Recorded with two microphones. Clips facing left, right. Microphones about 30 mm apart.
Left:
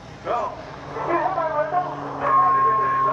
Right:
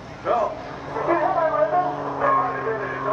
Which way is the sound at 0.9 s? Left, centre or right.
Centre.